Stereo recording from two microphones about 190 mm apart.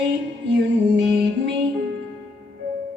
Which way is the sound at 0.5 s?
65° right (ahead or behind).